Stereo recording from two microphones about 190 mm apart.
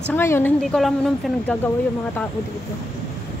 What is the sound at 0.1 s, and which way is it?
Speech, 10° left (ahead or behind).